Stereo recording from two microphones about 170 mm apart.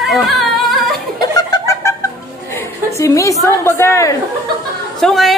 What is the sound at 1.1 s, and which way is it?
Chuckle, 20° left (ahead or behind).